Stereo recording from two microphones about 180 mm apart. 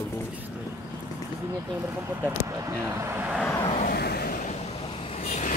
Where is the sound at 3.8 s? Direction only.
60° left (ahead or behind).